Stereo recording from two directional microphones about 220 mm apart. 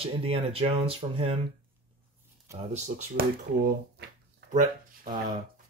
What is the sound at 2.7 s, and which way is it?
Speech, 30° right (ahead or behind).